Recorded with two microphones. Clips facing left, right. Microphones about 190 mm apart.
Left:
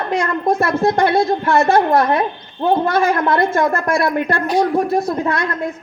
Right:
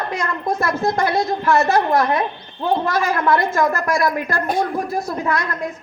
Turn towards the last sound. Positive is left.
turn(degrees=25)  # may be behind; listen again after turning